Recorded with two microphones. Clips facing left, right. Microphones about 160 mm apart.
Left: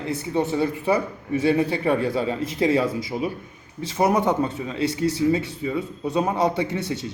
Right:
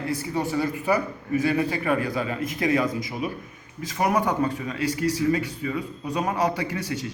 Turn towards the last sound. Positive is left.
turn(degrees=25)  # may be behind; listen again after turning